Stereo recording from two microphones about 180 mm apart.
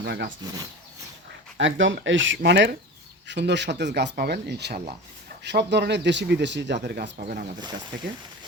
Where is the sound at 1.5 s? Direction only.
90° right; by 7.0 s 70° right (ahead or behind).